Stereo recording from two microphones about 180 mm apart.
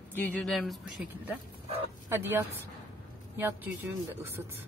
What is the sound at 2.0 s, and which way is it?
Speech, 15° right (ahead or behind).